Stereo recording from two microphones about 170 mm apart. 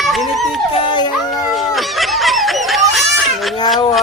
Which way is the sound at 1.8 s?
Centre (ahead or behind).